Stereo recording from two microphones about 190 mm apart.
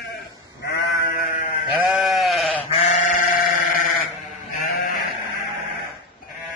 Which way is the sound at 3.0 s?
45° left (ahead or behind).